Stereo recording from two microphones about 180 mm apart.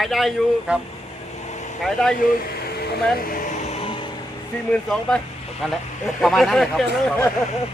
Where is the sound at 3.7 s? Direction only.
35° left (ahead or behind).